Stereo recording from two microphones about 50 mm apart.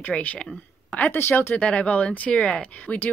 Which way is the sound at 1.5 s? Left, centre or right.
Left.